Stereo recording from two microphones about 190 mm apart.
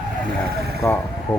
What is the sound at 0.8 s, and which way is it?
Speech, 10° left (ahead or behind).